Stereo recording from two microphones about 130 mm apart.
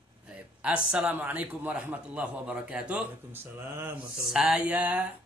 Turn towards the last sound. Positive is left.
turn(degrees=-10)  # may be behind; listen again after turning